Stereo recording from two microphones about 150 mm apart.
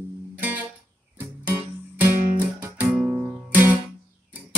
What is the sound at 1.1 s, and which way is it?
Music, 10° right (ahead or behind).